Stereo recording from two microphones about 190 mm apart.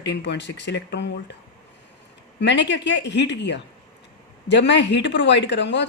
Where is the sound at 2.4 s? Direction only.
70° left (ahead or behind).